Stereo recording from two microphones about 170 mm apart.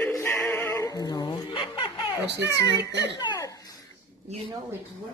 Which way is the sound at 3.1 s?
20° left (ahead or behind).